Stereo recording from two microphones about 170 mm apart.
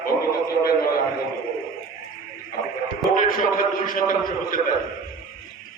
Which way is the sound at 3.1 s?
55° left (ahead or behind).